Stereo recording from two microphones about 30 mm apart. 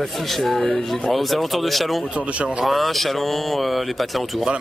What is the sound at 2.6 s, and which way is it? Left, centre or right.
Speech, centre.